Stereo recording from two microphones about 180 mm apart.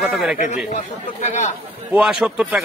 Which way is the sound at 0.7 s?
40° left (ahead or behind).